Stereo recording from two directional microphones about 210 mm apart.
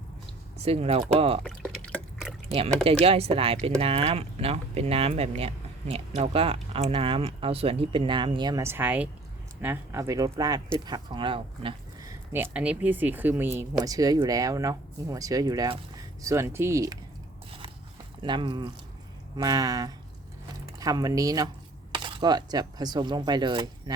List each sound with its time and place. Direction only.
0.6 s speech: 30° right (ahead or behind)
1.5 s drip: 5° left (ahead or behind)
3.0 s speech: 30° right (ahead or behind)
12.3 s speech: 10° right (ahead or behind)
18.2 s speech: 20° right (ahead or behind)